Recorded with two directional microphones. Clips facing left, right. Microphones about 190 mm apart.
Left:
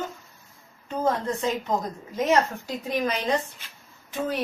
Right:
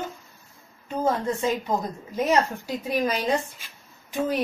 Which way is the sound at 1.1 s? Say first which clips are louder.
Right 1 dB; 10° right (ahead or behind).